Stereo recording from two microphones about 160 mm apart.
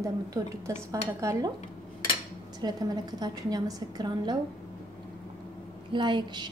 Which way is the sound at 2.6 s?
25° right (ahead or behind).